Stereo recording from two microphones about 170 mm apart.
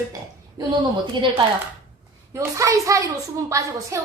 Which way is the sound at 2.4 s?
20° right (ahead or behind).